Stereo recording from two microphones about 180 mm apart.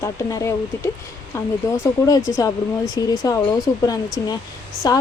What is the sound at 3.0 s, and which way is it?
Speech, 20° left (ahead or behind).